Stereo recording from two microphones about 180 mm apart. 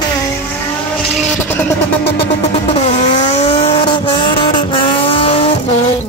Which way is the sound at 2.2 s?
35° left (ahead or behind).